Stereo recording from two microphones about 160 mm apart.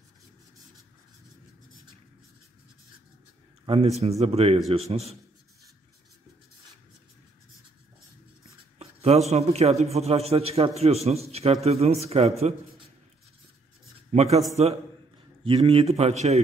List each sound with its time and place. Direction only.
3.6 s a man's voice: 35° right (ahead or behind)
8.7 s a man's voice: 40° right (ahead or behind)
14.1 s speech: 45° right (ahead or behind)
15.4 s a man's voice: 35° right (ahead or behind)